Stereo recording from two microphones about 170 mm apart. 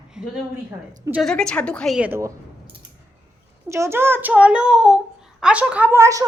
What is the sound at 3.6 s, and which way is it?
Speech, 15° right (ahead or behind).